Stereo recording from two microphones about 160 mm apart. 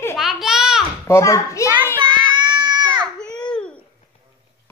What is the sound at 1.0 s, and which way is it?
Speech, 20° left (ahead or behind).